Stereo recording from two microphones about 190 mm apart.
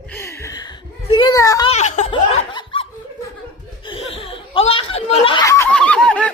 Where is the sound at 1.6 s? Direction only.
35° left (ahead or behind).